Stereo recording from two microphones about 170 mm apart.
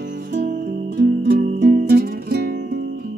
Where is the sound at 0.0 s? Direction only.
90° right.